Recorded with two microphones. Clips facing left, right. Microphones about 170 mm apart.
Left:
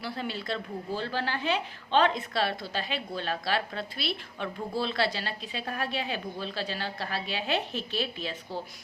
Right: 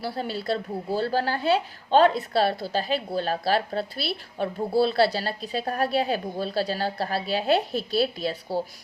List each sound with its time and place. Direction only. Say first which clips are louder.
0.0 s a woman's voice: right 5 dB; 35° right (ahead or behind)